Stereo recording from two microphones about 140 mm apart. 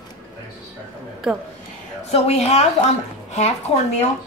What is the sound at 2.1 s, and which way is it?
A woman's voice, 50° left (ahead or behind).